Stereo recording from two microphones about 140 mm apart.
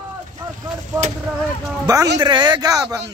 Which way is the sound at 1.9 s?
30° right (ahead or behind).